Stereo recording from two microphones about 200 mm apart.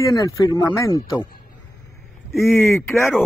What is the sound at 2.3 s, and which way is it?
Speech, 10° left (ahead or behind).